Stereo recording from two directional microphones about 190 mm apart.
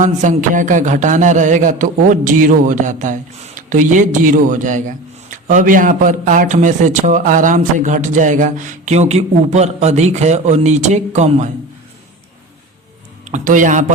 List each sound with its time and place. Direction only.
0.0 s speech: 40° right (ahead or behind)
13.2 s speech: 40° right (ahead or behind)